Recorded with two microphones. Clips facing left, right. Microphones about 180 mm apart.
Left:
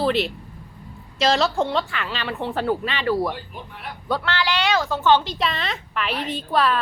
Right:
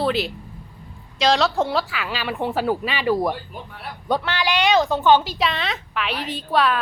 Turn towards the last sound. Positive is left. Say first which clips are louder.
# right 1 dB
turn(degrees=0)  # may be behind; listen again after turning